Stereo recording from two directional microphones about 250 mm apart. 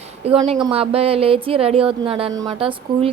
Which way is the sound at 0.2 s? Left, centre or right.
Right.